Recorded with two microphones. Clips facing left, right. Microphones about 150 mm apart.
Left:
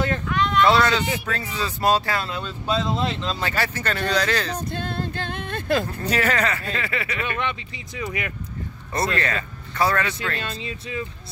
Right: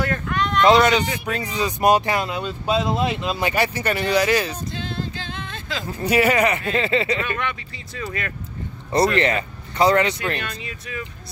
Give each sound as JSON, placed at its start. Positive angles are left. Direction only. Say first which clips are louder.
{"t": 0.3, "sound": "a sound", "louder": "even", "side_deg": 0}
{"t": 0.7, "sound": "speech", "louder": "right 8 dB", "side_deg": -15}
{"t": 4.6, "sound": "music", "louder": "left 1 dB", "side_deg": 55}
{"t": 5.9, "sound": "speech", "louder": "right 5 dB", "side_deg": -10}
{"t": 7.2, "sound": "speech", "louder": "even", "side_deg": 20}
{"t": 8.9, "sound": "speech", "louder": "right 6 dB", "side_deg": -20}
{"t": 10.4, "sound": "speech", "louder": "left 1 dB", "side_deg": 25}